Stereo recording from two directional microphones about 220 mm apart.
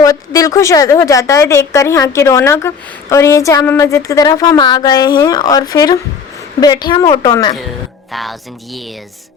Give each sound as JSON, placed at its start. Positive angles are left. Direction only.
{"t": 0.0, "sound": "a woman's voice", "side_deg": 15}
{"t": 8.1, "sound": "speech", "side_deg": 0}